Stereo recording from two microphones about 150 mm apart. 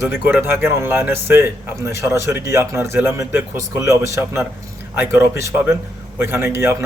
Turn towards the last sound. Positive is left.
turn(degrees=-20)  # may be behind; listen again after turning